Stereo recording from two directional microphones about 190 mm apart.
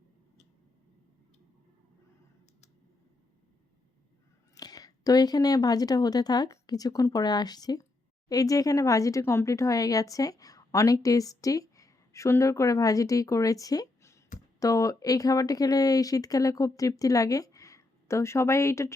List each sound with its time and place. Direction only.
4.5 s speech: 20° left (ahead or behind)